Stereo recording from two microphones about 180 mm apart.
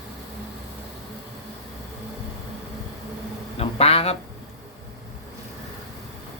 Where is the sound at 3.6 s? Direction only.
35° left (ahead or behind).